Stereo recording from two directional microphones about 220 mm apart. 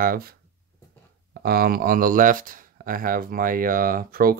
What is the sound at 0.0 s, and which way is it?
Speech, 40° right (ahead or behind).